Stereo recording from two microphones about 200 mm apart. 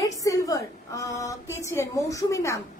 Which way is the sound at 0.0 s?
15° left (ahead or behind).